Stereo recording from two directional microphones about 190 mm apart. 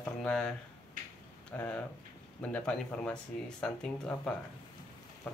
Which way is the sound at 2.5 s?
5° left (ahead or behind).